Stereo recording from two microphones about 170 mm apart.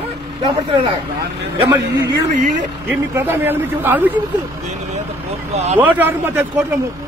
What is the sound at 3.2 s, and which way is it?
Speech, 10° right (ahead or behind).